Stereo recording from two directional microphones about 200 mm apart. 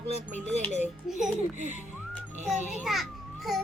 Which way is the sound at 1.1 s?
Centre (ahead or behind).